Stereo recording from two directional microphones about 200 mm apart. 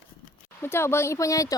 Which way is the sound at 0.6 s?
10° left (ahead or behind).